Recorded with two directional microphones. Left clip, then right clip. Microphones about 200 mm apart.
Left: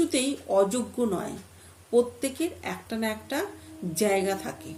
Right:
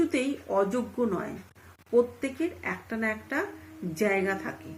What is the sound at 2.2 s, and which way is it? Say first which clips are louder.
A woman's voice: left 1 dB; 5° left (ahead or behind).